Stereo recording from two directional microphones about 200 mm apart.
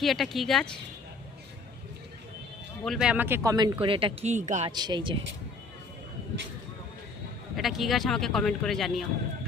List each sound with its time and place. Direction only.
0.0 s speech: centre (ahead or behind)
2.8 s speech: centre (ahead or behind); by 4.7 s 35° right (ahead or behind)
4.7 s speech: 20° right (ahead or behind)
7.5 s speech: centre (ahead or behind)